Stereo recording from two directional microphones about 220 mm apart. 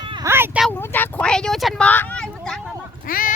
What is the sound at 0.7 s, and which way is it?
Speech, 10° left (ahead or behind).